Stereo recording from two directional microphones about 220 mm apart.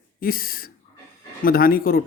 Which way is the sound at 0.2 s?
40° left (ahead or behind).